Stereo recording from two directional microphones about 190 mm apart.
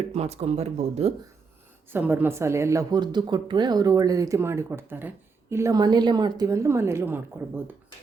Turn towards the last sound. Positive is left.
turn(degrees=-10)  # may be behind; listen again after turning